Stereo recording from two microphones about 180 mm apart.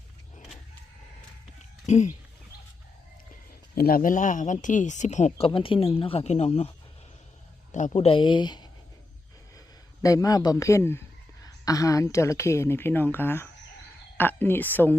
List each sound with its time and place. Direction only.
1.9 s speech: 40° left (ahead or behind)
3.8 s speech: 55° left (ahead or behind)
5.5 s speech: 30° left (ahead or behind)
7.9 s speech: 30° left (ahead or behind)
10.0 s speech: 20° left (ahead or behind)